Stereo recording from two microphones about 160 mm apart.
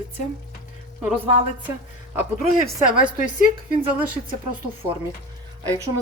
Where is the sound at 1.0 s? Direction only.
10° right (ahead or behind).